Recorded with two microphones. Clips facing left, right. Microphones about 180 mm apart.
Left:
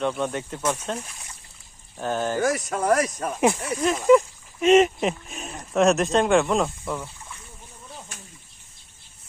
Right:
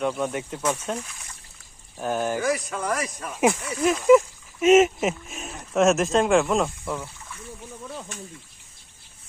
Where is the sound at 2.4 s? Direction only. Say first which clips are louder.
Left 2 dB; 40° left (ahead or behind).